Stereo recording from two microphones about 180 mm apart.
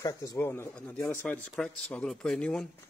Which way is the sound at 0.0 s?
20° left (ahead or behind).